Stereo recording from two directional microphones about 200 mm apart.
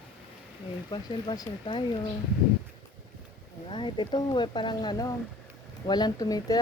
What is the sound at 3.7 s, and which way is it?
Speech, 25° left (ahead or behind).